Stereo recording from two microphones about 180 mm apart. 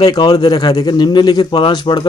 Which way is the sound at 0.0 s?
20° left (ahead or behind).